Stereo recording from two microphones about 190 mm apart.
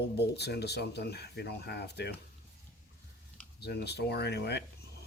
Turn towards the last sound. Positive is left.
turn(degrees=60)  # may be behind; listen again after turning